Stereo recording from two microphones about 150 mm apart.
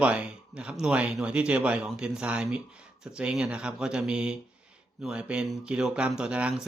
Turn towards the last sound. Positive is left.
turn(degrees=-5)  # may be behind; listen again after turning